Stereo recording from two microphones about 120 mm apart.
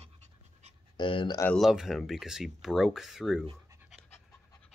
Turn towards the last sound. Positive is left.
turn(degrees=-5)  # may be behind; listen again after turning